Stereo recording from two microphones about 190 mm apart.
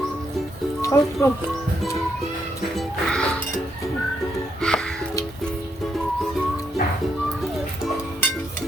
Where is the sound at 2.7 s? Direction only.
5° left (ahead or behind).